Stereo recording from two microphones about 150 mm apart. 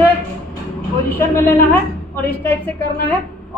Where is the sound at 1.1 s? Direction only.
15° left (ahead or behind).